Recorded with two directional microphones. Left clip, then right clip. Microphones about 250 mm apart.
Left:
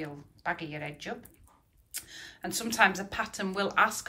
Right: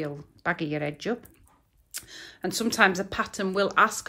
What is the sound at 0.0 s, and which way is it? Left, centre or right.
Speech, centre.